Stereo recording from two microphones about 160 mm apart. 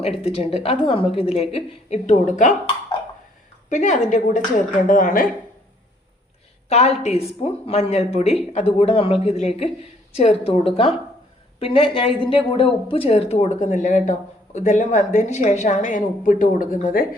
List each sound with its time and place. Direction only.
0.2 s a woman's voice: 40° left (ahead or behind)
3.7 s a woman's voice: 50° left (ahead or behind)
6.7 s a woman's voice: 40° left (ahead or behind); by 17.1 s 60° left (ahead or behind)